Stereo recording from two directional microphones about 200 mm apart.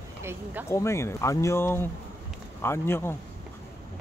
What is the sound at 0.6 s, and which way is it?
Speech, 15° left (ahead or behind).